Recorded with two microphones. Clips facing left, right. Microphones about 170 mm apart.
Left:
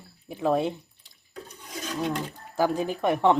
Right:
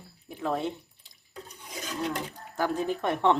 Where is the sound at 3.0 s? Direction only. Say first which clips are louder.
Left 4 dB; 10° left (ahead or behind).